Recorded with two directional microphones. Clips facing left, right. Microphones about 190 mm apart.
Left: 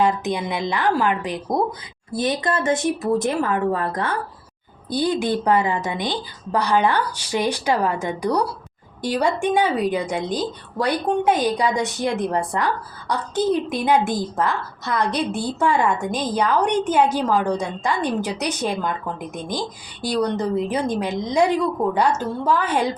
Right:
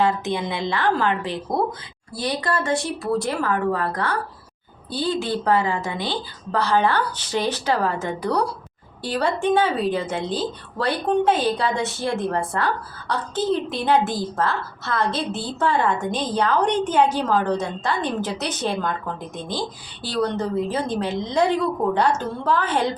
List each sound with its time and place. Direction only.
0.0 s speech: 15° left (ahead or behind)